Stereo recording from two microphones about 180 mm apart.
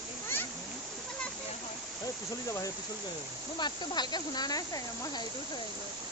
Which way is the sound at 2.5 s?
20° left (ahead or behind).